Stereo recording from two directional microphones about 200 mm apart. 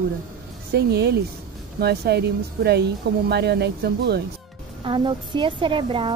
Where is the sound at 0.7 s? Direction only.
55° right (ahead or behind).